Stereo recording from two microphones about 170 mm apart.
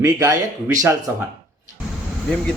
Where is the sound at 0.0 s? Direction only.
20° right (ahead or behind).